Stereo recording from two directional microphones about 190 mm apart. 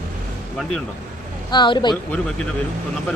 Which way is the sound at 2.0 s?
5° left (ahead or behind).